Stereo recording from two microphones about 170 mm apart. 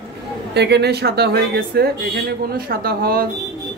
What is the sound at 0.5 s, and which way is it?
Speech, 80° right.